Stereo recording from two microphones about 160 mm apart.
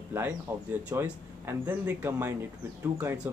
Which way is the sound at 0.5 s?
15° right (ahead or behind).